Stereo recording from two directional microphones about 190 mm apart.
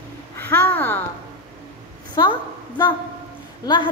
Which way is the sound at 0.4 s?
10° left (ahead or behind).